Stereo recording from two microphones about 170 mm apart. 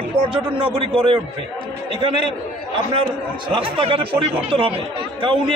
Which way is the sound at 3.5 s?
30° right (ahead or behind).